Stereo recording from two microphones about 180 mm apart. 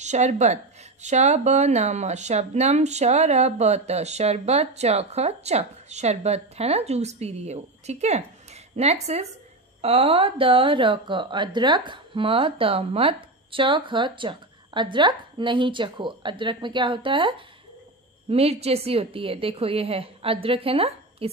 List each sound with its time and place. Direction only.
0.0 s a woman's voice: 40° right (ahead or behind)